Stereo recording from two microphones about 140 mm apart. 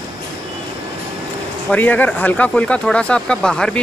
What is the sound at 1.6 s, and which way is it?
Speech, 10° left (ahead or behind).